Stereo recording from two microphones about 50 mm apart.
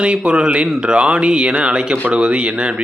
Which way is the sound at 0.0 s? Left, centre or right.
Right.